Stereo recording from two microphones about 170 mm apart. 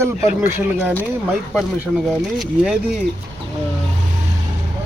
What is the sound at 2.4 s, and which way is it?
Speech, centre (ahead or behind).